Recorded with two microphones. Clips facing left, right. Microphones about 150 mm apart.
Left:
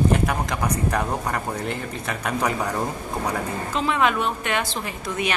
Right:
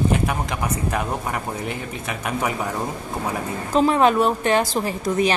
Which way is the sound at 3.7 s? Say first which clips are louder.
Right 6 dB; 40° right (ahead or behind).